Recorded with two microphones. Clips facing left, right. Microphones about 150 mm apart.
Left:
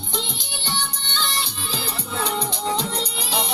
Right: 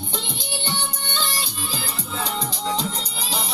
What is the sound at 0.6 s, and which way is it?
Music, 50° right (ahead or behind).